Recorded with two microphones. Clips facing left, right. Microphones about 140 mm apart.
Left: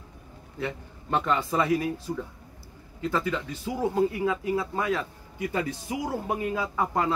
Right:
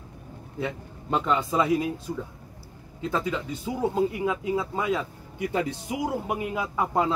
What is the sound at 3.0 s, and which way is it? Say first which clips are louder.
Speech: even; 20° right (ahead or behind).